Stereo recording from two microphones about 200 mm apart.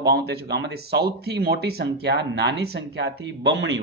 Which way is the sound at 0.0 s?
55° right (ahead or behind).